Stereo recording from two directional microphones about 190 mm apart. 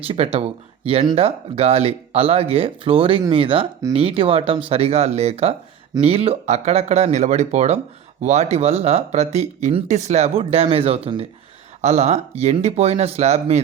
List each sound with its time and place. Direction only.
0.1 s speech: 30° right (ahead or behind)